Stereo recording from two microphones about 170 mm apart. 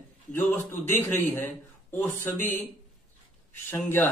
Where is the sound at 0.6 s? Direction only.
50° right (ahead or behind).